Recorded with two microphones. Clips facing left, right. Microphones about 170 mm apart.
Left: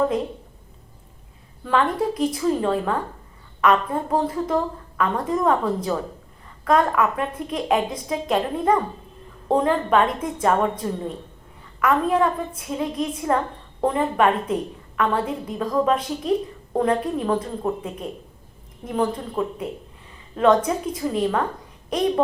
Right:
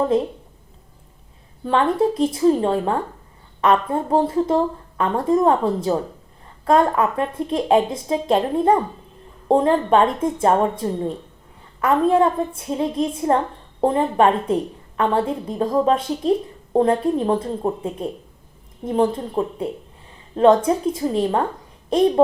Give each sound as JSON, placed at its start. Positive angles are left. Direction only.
{"t": 1.6, "sound": "a woman's voice", "side_deg": -25}